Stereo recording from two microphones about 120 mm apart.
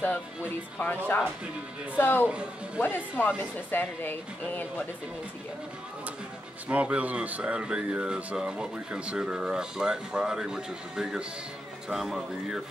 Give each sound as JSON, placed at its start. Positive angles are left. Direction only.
{"t": 0.7, "sound": "speech", "side_deg": 15}
{"t": 2.2, "sound": "speech", "side_deg": -10}
{"t": 2.8, "sound": "speech", "side_deg": 15}
{"t": 6.7, "sound": "speech", "side_deg": -10}